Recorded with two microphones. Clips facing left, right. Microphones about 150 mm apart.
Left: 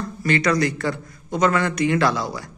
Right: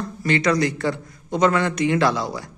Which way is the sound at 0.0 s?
20° right (ahead or behind).